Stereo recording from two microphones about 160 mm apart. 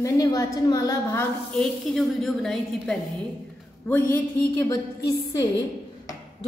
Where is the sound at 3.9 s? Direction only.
15° left (ahead or behind).